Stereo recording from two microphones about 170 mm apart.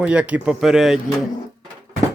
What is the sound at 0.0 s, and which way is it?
Speech, 5° right (ahead or behind).